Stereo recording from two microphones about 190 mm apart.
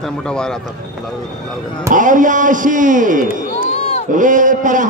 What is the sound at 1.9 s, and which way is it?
A man's voice, 45° right (ahead or behind).